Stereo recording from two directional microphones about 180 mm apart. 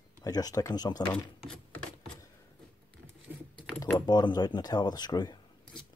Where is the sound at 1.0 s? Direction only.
5° left (ahead or behind).